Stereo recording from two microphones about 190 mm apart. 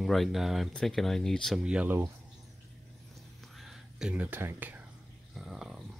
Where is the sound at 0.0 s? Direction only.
Centre (ahead or behind).